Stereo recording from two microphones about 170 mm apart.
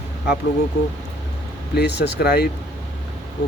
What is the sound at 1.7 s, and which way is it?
Speech, 85° left.